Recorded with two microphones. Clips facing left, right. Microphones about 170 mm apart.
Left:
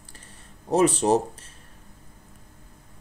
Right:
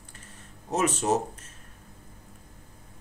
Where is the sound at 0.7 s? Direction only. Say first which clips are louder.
Left 6 dB; 35° left (ahead or behind).